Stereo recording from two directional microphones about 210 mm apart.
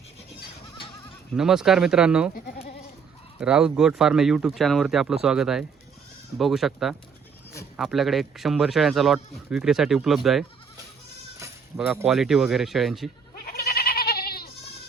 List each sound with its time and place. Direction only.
1.4 s speech: centre (ahead or behind)
3.4 s speech: 5° right (ahead or behind)
11.9 s speech: 5° right (ahead or behind)
13.3 s goat: 45° left (ahead or behind)